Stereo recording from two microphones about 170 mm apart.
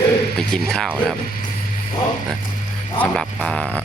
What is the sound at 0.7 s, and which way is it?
Speech, 5° left (ahead or behind).